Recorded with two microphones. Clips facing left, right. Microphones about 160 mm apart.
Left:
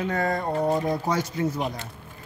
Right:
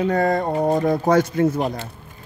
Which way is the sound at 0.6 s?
50° right (ahead or behind).